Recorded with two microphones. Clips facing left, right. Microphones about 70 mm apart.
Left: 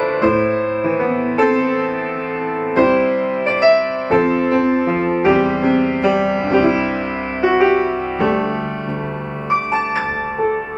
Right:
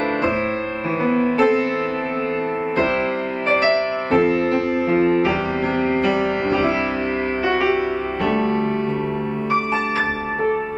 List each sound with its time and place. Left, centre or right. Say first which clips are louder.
1.0 s music: right 2 dB; left
2.7 s music: left 8 dB; left